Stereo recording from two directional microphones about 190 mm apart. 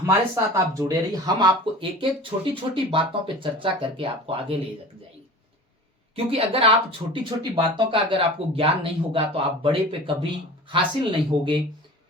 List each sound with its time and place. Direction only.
0.0 s speech: 15° right (ahead or behind)
6.1 s speech: 30° right (ahead or behind)